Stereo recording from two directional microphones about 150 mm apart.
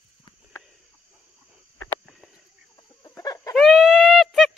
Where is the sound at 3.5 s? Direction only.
Centre (ahead or behind).